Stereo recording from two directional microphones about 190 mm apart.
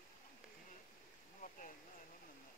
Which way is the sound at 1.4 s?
45° left (ahead or behind).